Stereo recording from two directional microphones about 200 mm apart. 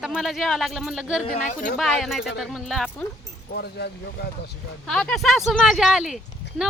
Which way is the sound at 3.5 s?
55° left (ahead or behind).